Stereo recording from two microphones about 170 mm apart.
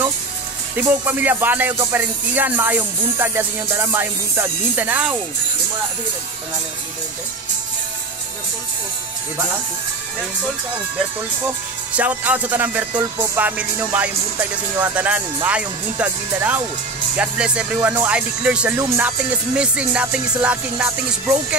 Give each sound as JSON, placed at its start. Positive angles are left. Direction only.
{"t": 0.7, "sound": "speech", "side_deg": -10}
{"t": 11.4, "sound": "speech", "side_deg": -10}
{"t": 13.0, "sound": "music", "side_deg": -20}
{"t": 13.8, "sound": "speech", "side_deg": -10}